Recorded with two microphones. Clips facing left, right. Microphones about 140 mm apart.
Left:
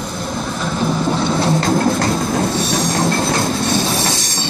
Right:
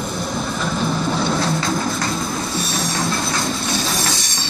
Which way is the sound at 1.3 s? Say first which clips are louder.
Left 4 dB; 25° left (ahead or behind).